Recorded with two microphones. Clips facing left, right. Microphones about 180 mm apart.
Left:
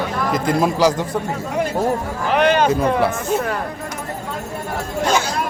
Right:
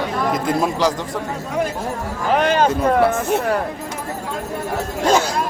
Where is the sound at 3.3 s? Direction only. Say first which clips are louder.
Even; 65° right (ahead or behind).